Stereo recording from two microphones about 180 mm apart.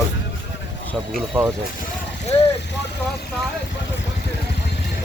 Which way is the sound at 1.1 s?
Centre (ahead or behind).